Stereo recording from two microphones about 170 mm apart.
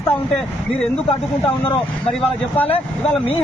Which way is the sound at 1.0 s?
35° left (ahead or behind).